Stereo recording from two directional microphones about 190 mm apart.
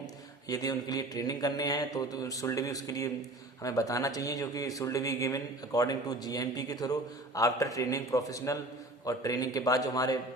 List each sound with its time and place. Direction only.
0.4 s speech: 20° left (ahead or behind)